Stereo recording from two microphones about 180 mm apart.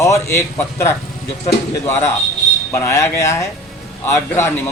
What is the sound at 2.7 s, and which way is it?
A man's voice, 15° left (ahead or behind).